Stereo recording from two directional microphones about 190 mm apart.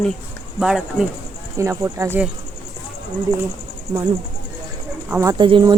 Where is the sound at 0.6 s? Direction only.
Centre (ahead or behind).